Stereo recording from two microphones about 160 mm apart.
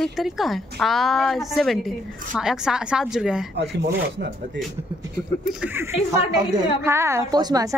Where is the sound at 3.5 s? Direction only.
90° right.